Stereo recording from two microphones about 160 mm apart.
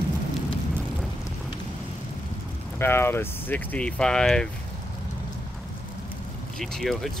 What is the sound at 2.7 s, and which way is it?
Speech, 15° left (ahead or behind).